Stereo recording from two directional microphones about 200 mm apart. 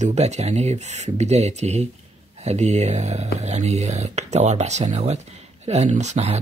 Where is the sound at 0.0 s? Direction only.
35° right (ahead or behind).